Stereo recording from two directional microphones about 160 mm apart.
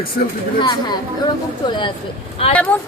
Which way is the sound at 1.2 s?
30° left (ahead or behind).